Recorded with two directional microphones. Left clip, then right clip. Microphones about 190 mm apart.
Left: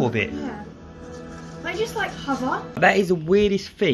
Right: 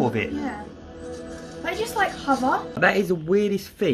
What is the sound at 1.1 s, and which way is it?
Music, 30° left (ahead or behind).